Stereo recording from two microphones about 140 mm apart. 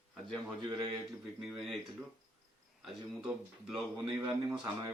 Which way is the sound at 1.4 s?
Centre (ahead or behind).